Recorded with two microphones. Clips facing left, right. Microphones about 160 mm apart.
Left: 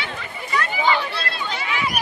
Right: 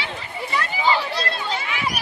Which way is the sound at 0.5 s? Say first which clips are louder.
Left 1 dB; 30° right (ahead or behind).